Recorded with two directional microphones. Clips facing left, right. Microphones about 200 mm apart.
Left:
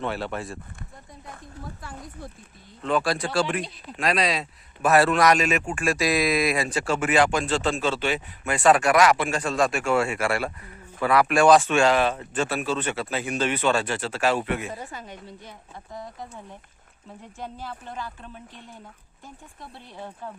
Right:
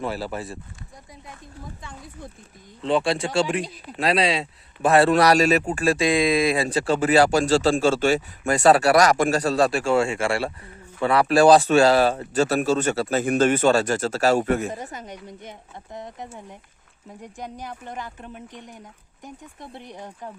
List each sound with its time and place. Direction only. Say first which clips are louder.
0.0 s speech: right 1 dB; 5° right (ahead or behind)
2.8 s a man's voice: right 3 dB; 25° right (ahead or behind); by 14.7 s 45° right (ahead or behind)
15.3 s speech: right 3 dB; 20° right (ahead or behind)